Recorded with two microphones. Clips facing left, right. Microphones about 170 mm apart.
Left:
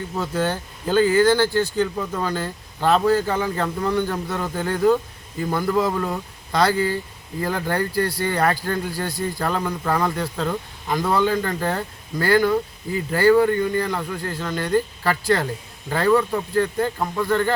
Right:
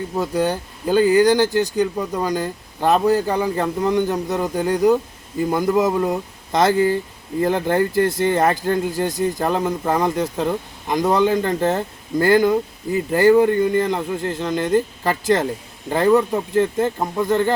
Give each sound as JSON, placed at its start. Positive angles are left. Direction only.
{"t": 0.2, "sound": "speech", "side_deg": -15}